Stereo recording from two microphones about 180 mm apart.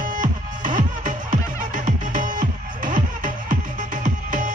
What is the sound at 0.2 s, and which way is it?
Music, 45° right (ahead or behind).